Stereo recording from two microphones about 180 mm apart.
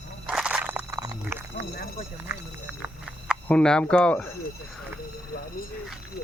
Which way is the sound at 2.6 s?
5° right (ahead or behind).